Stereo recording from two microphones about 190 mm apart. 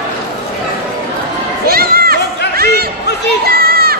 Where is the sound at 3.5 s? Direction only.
55° right (ahead or behind).